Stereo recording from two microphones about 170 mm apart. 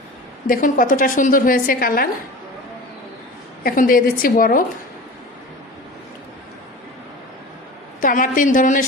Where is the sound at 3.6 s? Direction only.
55° left (ahead or behind).